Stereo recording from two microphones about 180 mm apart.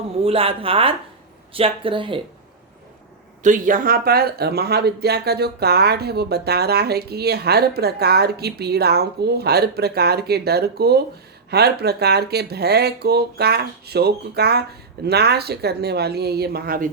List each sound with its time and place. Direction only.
0.2 s speech: 30° right (ahead or behind)
3.4 s speech: 45° right (ahead or behind)